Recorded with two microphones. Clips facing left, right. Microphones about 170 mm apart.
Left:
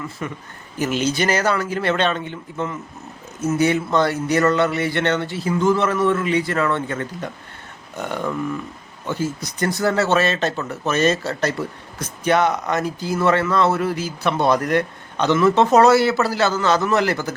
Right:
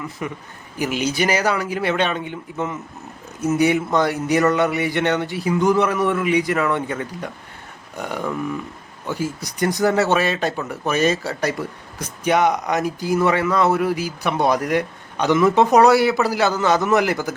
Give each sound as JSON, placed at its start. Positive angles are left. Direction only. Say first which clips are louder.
{"t": 0.2, "sound": "speech", "louder": "right 1 dB", "side_deg": -15}